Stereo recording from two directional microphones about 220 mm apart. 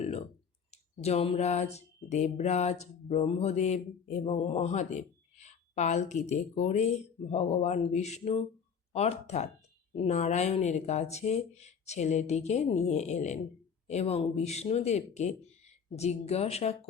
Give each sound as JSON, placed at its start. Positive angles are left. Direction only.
{"t": 0.7, "sound": "speech", "side_deg": 30}